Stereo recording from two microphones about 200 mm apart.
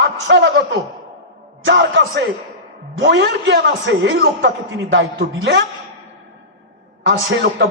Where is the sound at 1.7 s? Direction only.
65° right (ahead or behind).